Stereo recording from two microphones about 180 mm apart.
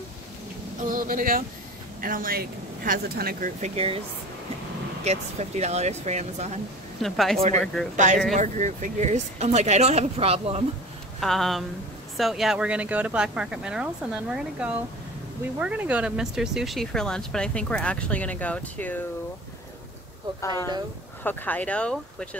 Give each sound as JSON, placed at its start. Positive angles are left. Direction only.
{"t": 0.8, "sound": "speech", "side_deg": -50}
{"t": 5.0, "sound": "speech", "side_deg": -40}
{"t": 7.0, "sound": "speech", "side_deg": 0}
{"t": 7.9, "sound": "speech", "side_deg": -45}
{"t": 11.1, "sound": "speech", "side_deg": 0}
{"t": 20.3, "sound": "speech", "side_deg": 15}